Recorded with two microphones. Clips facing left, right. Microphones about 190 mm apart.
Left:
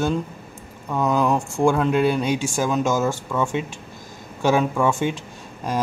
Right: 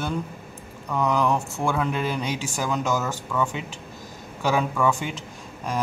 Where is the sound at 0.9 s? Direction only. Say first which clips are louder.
Left 2 dB; 20° left (ahead or behind).